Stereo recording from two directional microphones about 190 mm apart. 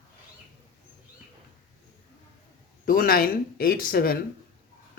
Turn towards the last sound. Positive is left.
turn(degrees=50)  # may be behind; listen again after turning